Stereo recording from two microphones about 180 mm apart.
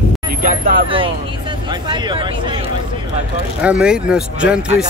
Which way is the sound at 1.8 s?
25° right (ahead or behind).